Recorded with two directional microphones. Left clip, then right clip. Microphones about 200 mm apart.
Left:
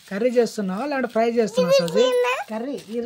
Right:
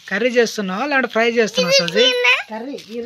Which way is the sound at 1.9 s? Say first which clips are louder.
Right 3 dB; 40° left (ahead or behind).